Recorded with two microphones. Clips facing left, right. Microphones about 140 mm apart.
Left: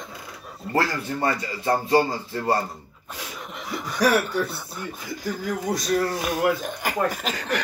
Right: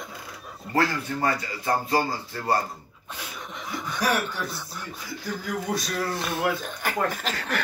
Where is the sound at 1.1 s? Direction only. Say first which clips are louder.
Left 3 dB; 25° left (ahead or behind).